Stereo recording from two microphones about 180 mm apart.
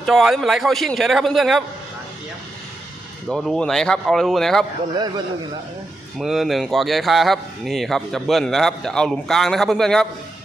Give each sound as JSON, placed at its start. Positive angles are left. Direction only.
{"t": 0.0, "sound": "speech", "side_deg": 0}
{"t": 3.3, "sound": "speech", "side_deg": 0}
{"t": 4.9, "sound": "a man's voice", "side_deg": -25}
{"t": 6.1, "sound": "speech", "side_deg": 0}